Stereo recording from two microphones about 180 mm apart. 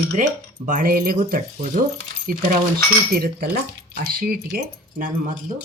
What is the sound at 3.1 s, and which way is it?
Speech, 55° right (ahead or behind).